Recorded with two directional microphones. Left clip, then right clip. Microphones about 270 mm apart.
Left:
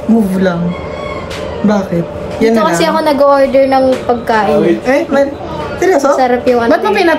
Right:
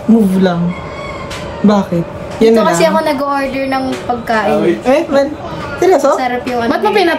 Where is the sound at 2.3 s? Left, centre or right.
Centre.